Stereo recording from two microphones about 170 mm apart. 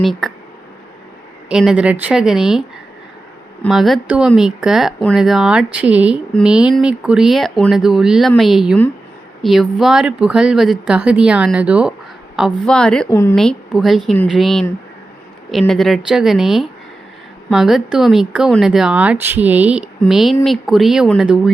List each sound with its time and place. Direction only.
0.0 s speech: centre (ahead or behind)
1.5 s speech: 5° right (ahead or behind)
3.7 s speech: centre (ahead or behind)
12.5 s speech: 5° left (ahead or behind)
13.1 s speech: 15° left (ahead or behind)
13.3 s speech: 5° left (ahead or behind)